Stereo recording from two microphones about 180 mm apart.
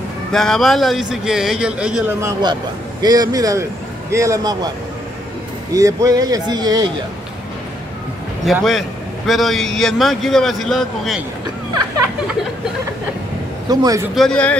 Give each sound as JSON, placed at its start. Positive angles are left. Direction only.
{"t": 0.3, "sound": "a man's voice", "side_deg": 0}
{"t": 3.0, "sound": "speech", "side_deg": -20}
{"t": 5.7, "sound": "speech", "side_deg": -20}
{"t": 8.5, "sound": "a man's voice", "side_deg": 0}
{"t": 13.7, "sound": "speech", "side_deg": -20}
{"t": 14.1, "sound": "a man's voice", "side_deg": 5}